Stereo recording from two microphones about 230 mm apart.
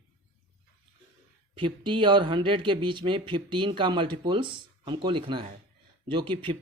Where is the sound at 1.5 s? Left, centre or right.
Right.